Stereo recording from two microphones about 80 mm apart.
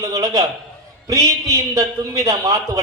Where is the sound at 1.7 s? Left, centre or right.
Right.